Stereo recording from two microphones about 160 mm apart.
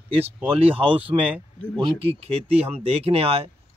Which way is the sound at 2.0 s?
40° right (ahead or behind).